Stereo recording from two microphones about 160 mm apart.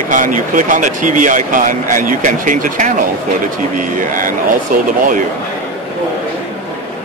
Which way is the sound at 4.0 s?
55° right (ahead or behind).